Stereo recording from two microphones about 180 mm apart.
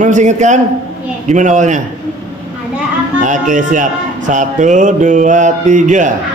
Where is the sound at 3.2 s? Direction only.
45° right (ahead or behind).